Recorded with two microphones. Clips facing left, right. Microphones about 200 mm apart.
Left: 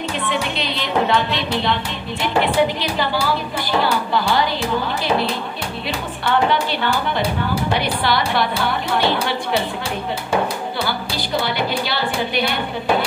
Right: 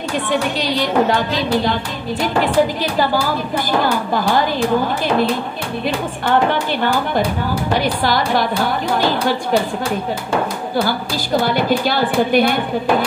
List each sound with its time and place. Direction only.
0.3 s speech: 40° right (ahead or behind)
6.2 s speech: 45° right (ahead or behind)
10.9 s speech: 45° right (ahead or behind)